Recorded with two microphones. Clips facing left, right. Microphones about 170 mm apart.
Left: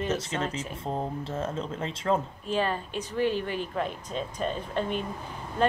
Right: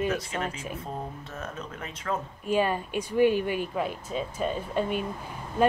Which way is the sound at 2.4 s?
10° right (ahead or behind).